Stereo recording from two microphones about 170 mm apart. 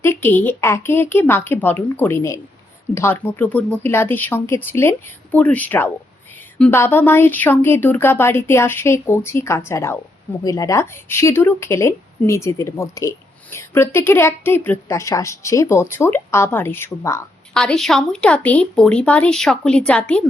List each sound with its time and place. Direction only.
0.0 s speech: 15° left (ahead or behind)
17.5 s speech: 5° left (ahead or behind)